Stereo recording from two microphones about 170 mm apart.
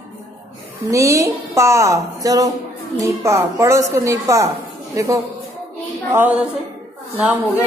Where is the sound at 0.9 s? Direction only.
20° right (ahead or behind).